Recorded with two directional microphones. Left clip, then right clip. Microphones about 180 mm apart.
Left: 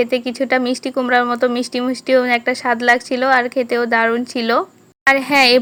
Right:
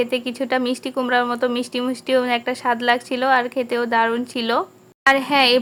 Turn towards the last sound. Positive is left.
turn(degrees=20)  # may be behind; listen again after turning